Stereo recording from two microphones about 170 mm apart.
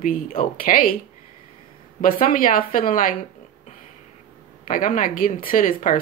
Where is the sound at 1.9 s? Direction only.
50° left (ahead or behind).